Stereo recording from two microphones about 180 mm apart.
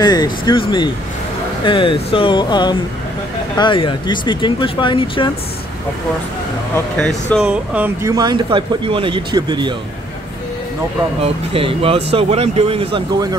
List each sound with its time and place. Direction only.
0.0 s speech: 20° left (ahead or behind)
7.0 s speech: 5° left (ahead or behind)
8.1 s speech: 25° right (ahead or behind)
11.2 s speech: 30° right (ahead or behind)